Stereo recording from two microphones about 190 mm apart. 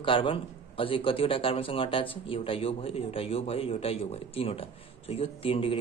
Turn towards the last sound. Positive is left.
turn(degrees=30)  # may be behind; listen again after turning